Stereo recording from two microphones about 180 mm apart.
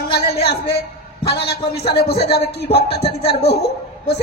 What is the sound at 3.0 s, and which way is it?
Speech, 30° left (ahead or behind).